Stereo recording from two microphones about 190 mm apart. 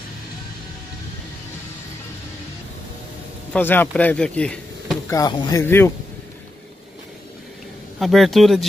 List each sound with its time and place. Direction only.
3.5 s speech: 10° left (ahead or behind)
5.1 s speech: 20° left (ahead or behind)
8.0 s a man's voice: centre (ahead or behind)